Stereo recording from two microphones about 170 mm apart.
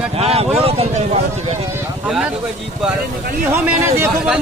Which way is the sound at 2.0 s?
5° right (ahead or behind).